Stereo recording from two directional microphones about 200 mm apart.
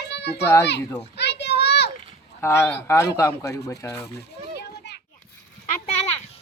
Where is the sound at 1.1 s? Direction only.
60° left (ahead or behind).